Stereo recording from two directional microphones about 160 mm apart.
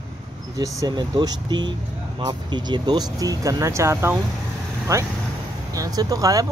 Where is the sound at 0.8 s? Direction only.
25° right (ahead or behind).